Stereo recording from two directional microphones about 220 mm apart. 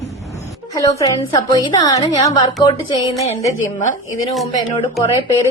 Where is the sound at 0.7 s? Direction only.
15° left (ahead or behind).